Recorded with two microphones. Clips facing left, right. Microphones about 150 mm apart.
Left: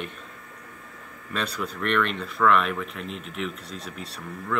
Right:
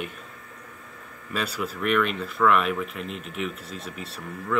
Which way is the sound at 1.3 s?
5° right (ahead or behind).